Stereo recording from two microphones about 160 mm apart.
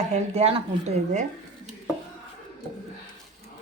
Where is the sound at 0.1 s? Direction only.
40° right (ahead or behind).